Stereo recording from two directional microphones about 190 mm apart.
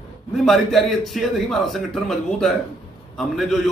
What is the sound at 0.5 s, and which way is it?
A man's voice, centre (ahead or behind).